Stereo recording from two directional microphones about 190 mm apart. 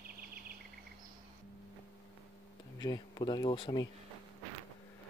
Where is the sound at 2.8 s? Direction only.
25° left (ahead or behind).